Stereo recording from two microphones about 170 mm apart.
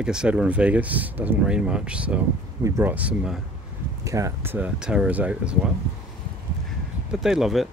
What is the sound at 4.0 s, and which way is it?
Speech, 20° right (ahead or behind).